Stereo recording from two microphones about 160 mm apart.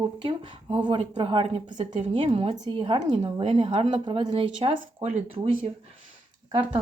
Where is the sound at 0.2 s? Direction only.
30° right (ahead or behind).